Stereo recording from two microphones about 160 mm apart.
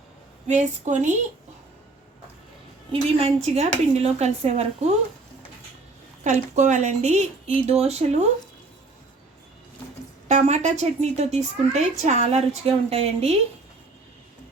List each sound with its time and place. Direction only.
0.4 s a woman's voice: 50° right (ahead or behind)
2.9 s speech: 40° right (ahead or behind)
6.2 s a woman's voice: 50° right (ahead or behind)
10.2 s a woman's voice: 45° right (ahead or behind)